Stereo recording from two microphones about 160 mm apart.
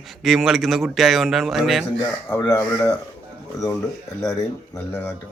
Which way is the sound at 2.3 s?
20° left (ahead or behind).